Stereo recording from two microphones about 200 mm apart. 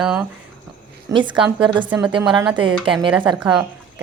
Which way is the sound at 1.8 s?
10° right (ahead or behind).